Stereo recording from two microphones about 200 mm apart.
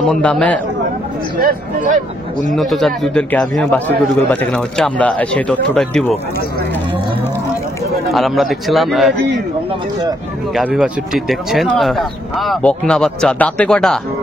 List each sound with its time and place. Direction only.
0.0 s a man's voice: 5° left (ahead or behind)
1.4 s speech: 45° right (ahead or behind)
2.5 s a man's voice: centre (ahead or behind)
8.1 s a man's voice: centre (ahead or behind)
10.5 s a man's voice: centre (ahead or behind)